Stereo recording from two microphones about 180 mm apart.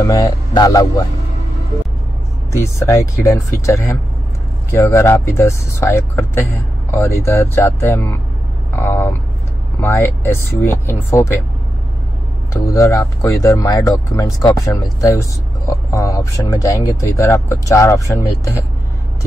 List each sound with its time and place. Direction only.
0.0 s a man's voice: 20° left (ahead or behind)
2.5 s speech: 15° left (ahead or behind)
8.7 s vehicle: 15° left (ahead or behind)
9.8 s speech: 15° left (ahead or behind)
12.6 s speech: 15° left (ahead or behind)